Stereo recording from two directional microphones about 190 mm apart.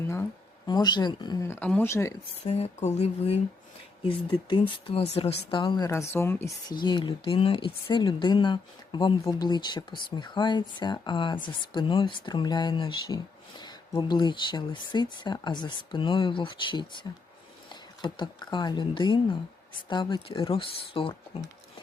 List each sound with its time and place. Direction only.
0.7 s speech: 20° left (ahead or behind)
2.5 s speech: 35° left (ahead or behind)